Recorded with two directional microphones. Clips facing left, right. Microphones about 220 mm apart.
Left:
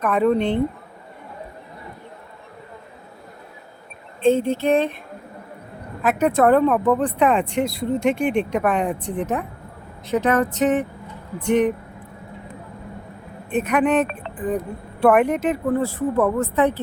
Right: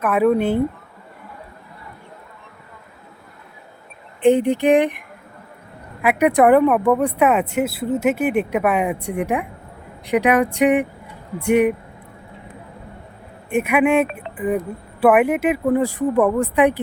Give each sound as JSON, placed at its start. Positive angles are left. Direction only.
{"t": 0.0, "sound": "speech", "side_deg": -5}
{"t": 4.2, "sound": "speech", "side_deg": -15}
{"t": 13.5, "sound": "speech", "side_deg": -10}